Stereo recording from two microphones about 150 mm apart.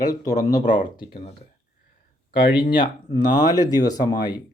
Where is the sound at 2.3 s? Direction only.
35° left (ahead or behind).